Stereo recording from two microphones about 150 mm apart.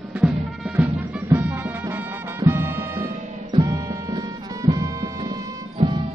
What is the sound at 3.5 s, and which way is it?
Music, 25° right (ahead or behind).